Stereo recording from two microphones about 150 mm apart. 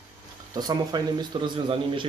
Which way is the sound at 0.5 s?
25° right (ahead or behind).